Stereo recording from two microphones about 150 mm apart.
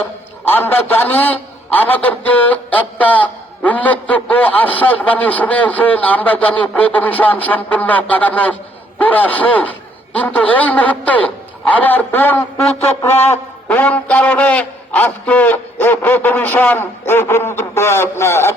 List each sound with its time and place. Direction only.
0.5 s a man's voice: 15° left (ahead or behind)
13.7 s a man's voice: 10° left (ahead or behind)